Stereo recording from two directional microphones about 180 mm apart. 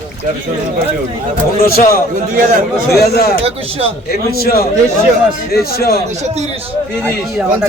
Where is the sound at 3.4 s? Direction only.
35° right (ahead or behind).